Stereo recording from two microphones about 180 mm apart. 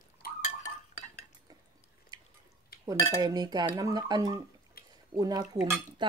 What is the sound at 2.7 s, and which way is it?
Dishes, 55° left (ahead or behind).